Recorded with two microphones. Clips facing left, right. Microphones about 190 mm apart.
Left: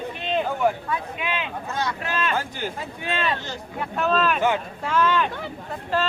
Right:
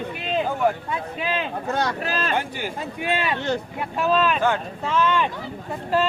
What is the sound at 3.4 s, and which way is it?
Speech, 65° right (ahead or behind).